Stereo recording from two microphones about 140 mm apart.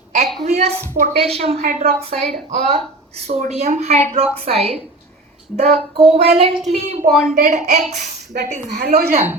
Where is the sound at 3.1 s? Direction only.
55° right (ahead or behind).